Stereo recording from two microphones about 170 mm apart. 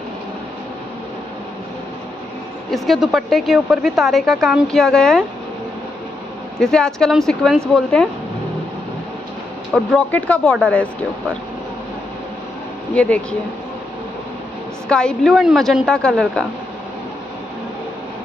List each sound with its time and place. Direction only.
2.7 s speech: centre (ahead or behind)
6.6 s speech: 5° left (ahead or behind)
9.9 s speech: 10° left (ahead or behind)
12.9 s speech: 5° left (ahead or behind)
14.9 s speech: 5° left (ahead or behind)